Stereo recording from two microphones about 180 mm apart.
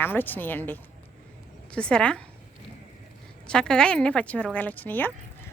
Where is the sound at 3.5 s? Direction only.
5° left (ahead or behind).